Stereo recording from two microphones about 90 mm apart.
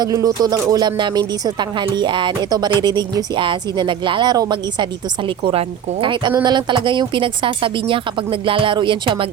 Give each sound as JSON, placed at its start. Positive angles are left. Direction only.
{"t": 0.0, "sound": "speech", "side_deg": -40}
{"t": 6.4, "sound": "a woman's voice", "side_deg": -55}